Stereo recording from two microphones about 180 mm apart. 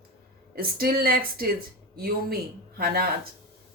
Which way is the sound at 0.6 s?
55° right (ahead or behind).